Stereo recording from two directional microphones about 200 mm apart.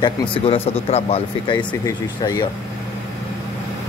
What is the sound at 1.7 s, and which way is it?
Speech, 15° left (ahead or behind).